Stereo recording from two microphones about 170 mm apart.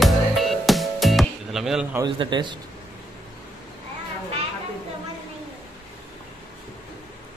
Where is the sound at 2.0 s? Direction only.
25° right (ahead or behind).